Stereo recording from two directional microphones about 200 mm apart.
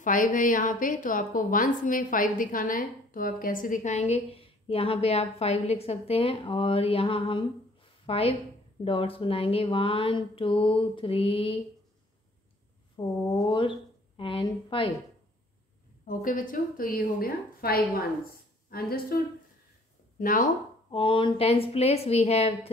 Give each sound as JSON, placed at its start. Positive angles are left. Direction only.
{"t": 0.0, "sound": "a woman's voice", "side_deg": 40}
{"t": 12.9, "sound": "a woman's voice", "side_deg": 20}
{"t": 16.1, "sound": "a woman's voice", "side_deg": 40}
{"t": 20.2, "sound": "speech", "side_deg": 40}
{"t": 20.9, "sound": "speech", "side_deg": 25}